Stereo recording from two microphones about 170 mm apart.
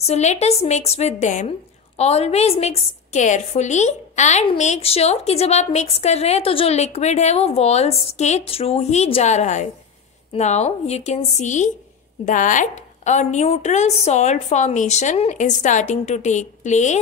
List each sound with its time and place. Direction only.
0.0 s a woman's voice: 40° left (ahead or behind)